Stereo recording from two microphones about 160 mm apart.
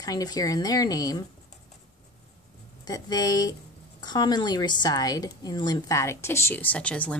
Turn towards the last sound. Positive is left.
turn(degrees=10)  # may be behind; listen again after turning